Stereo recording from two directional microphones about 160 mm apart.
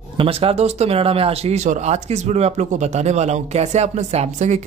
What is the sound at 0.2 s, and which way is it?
Speech, 35° right (ahead or behind).